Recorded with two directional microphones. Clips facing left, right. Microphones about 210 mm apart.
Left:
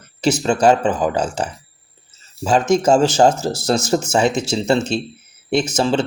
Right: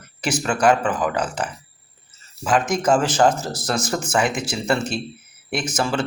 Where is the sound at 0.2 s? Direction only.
25° left (ahead or behind).